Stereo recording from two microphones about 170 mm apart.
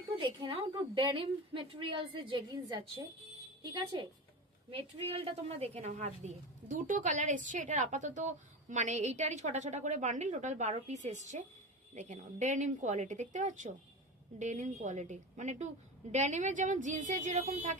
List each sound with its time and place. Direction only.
0.2 s a woman's voice: 30° right (ahead or behind); by 17.7 s 45° right (ahead or behind)